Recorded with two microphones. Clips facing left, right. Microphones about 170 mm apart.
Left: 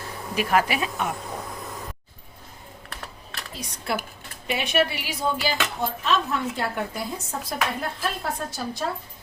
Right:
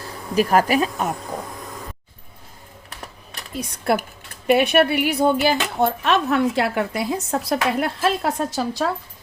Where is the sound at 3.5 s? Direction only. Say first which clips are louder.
Right 8 dB; 55° right (ahead or behind); by 8.9 s 90° right.